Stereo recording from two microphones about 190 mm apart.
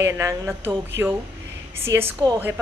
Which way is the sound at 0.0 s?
15° right (ahead or behind).